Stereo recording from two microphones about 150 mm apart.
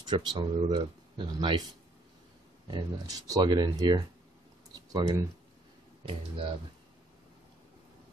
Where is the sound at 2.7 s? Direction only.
25° right (ahead or behind).